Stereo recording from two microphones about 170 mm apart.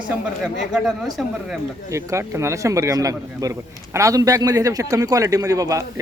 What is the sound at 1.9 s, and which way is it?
A man's voice, 15° right (ahead or behind).